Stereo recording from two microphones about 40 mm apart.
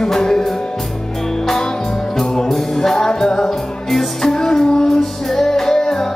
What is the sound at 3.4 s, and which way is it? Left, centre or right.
Music, centre.